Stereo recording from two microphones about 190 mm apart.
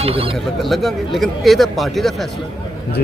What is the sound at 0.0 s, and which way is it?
Speech, 30° right (ahead or behind).